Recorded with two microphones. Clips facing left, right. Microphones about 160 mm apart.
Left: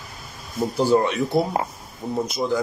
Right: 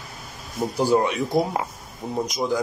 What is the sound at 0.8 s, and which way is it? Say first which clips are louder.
Speech: left 1 dB; 10° right (ahead or behind).